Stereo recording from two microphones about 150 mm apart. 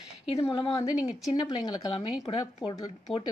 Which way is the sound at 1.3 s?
30° left (ahead or behind).